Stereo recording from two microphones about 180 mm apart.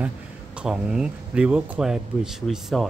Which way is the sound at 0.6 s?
5° right (ahead or behind).